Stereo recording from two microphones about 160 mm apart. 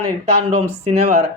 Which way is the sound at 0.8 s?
40° right (ahead or behind).